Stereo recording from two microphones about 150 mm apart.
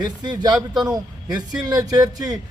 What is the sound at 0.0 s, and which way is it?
A man's voice, 25° right (ahead or behind).